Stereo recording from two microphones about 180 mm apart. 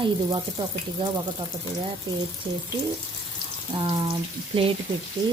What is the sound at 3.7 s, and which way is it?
Speech, 30° right (ahead or behind).